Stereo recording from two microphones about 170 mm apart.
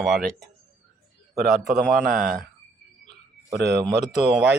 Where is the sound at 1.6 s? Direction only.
Centre (ahead or behind).